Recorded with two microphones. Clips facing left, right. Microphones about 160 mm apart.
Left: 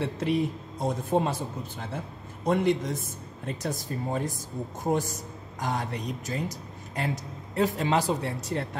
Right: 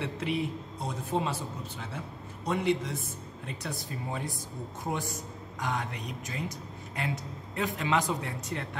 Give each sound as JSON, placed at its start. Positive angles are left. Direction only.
{"t": 0.0, "sound": "speech", "side_deg": 40}
{"t": 2.4, "sound": "a man's voice", "side_deg": 50}